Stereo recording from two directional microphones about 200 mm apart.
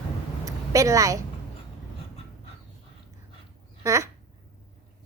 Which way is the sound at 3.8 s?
15° right (ahead or behind).